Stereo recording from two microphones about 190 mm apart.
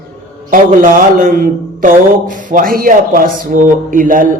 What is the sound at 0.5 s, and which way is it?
A man's voice, 45° right (ahead or behind).